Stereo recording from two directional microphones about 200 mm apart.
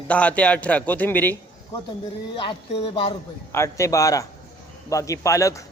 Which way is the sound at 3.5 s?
15° left (ahead or behind).